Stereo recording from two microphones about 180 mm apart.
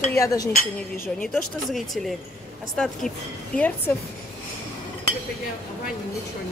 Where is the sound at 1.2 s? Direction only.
Centre (ahead or behind).